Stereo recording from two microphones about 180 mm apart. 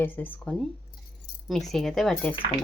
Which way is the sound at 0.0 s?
10° left (ahead or behind).